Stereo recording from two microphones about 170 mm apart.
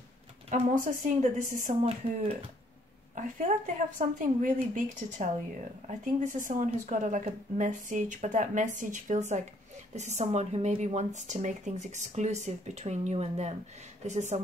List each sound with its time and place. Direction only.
0.5 s speech: 50° right (ahead or behind)